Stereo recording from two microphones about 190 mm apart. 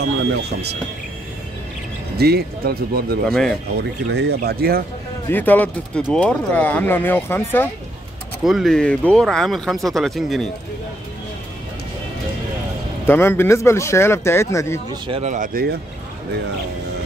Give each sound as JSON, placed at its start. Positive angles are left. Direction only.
{"t": 2.1, "sound": "speech", "side_deg": -55}
{"t": 3.3, "sound": "speech", "side_deg": 5}
{"t": 3.7, "sound": "speech", "side_deg": -60}
{"t": 5.3, "sound": "speech", "side_deg": 10}
{"t": 8.5, "sound": "speech", "side_deg": 0}
{"t": 13.0, "sound": "speech", "side_deg": 10}
{"t": 14.9, "sound": "speech", "side_deg": -25}
{"t": 15.2, "sound": "speech", "side_deg": -45}